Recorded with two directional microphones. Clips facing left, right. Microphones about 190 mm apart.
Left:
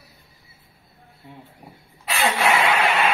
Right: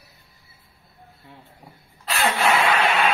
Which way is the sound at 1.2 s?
20° left (ahead or behind).